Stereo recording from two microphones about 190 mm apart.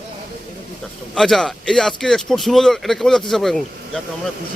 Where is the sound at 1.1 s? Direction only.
Centre (ahead or behind).